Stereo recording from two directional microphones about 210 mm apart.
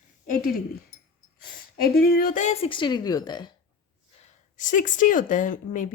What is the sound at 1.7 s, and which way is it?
A woman's voice, 45° left (ahead or behind).